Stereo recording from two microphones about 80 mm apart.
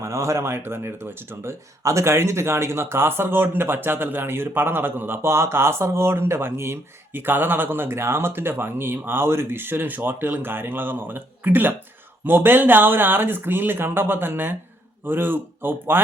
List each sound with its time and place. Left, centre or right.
0.0 s speech: right